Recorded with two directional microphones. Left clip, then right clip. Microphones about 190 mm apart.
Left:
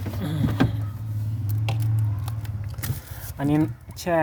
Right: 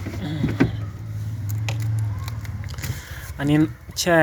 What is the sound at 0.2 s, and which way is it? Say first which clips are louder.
Power windows: right 2 dB; 35° left (ahead or behind).